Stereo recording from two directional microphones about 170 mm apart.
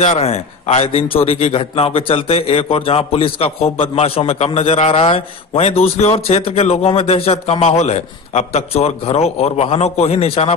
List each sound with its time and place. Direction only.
0.0 s a man's voice: 40° left (ahead or behind)